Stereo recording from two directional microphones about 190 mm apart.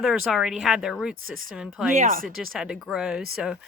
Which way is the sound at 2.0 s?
45° right (ahead or behind).